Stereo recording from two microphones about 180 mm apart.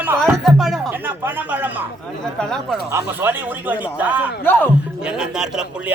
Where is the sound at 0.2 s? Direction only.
Centre (ahead or behind).